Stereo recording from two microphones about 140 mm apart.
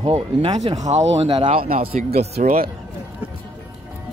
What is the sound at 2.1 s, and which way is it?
Speech, 55° right (ahead or behind).